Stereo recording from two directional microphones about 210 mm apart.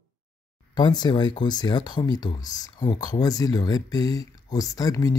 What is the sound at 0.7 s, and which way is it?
Speech, 20° left (ahead or behind).